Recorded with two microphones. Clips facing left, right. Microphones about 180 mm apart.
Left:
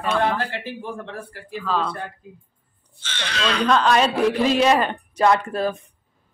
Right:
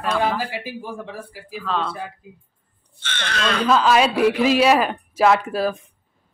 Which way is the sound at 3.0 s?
55° right (ahead or behind).